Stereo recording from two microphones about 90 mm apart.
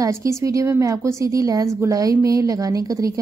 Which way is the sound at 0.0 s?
35° right (ahead or behind).